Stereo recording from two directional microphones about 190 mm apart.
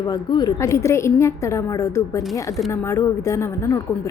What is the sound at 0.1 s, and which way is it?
A woman's voice, 20° left (ahead or behind).